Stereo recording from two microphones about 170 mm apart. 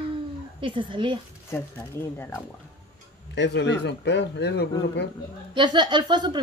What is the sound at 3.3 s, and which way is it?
Speech, 90° left.